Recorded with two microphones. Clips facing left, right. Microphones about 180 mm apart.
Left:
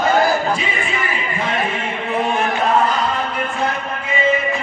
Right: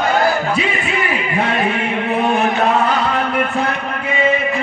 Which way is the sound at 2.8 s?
65° right (ahead or behind).